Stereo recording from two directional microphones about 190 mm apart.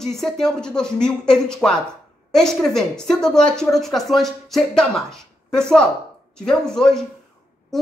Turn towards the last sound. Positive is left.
turn(degrees=5)  # may be behind; listen again after turning